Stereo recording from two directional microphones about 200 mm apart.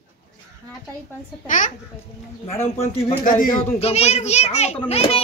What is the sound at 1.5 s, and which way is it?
Speech, 40° left (ahead or behind).